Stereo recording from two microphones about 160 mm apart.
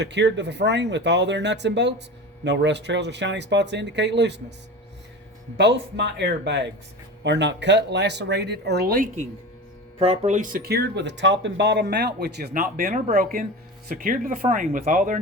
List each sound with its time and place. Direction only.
0.0 s speech: 90° right
5.5 s speech: 90° right; by 9.2 s 60° right (ahead or behind)
10.1 s speech: 50° right (ahead or behind)